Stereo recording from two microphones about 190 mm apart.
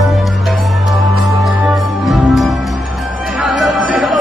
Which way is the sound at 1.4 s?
Centre (ahead or behind).